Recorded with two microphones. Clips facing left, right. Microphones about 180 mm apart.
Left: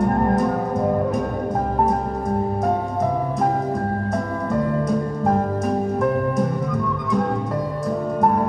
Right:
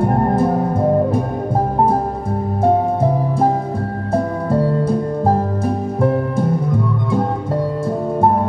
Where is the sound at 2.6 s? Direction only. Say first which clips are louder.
Right 11 dB; 30° right (ahead or behind).